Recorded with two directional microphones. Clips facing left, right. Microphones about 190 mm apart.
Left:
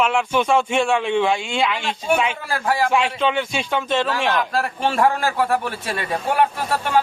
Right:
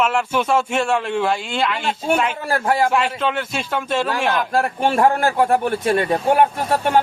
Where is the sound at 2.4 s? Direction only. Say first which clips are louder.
Right 3 dB; 55° right (ahead or behind).